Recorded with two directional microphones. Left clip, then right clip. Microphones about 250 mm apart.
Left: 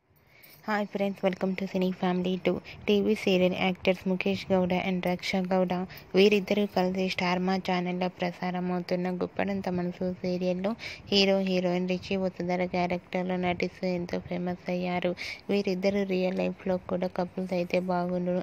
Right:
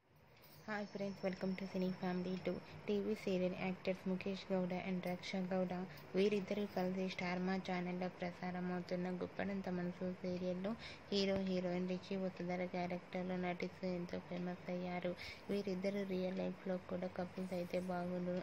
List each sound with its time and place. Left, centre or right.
0.7 s speech: left